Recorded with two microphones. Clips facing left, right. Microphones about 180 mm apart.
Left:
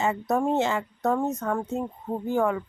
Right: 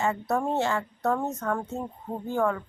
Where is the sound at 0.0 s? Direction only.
15° left (ahead or behind).